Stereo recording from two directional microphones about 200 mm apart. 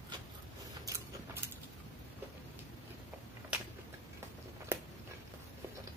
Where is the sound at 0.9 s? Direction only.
10° right (ahead or behind).